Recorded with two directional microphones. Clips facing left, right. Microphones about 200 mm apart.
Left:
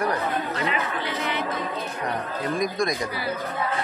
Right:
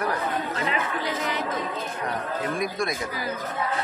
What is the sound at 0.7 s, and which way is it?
Speech, 40° right (ahead or behind).